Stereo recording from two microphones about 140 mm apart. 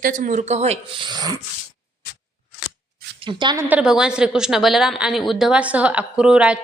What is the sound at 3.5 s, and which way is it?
A woman's voice, 10° right (ahead or behind).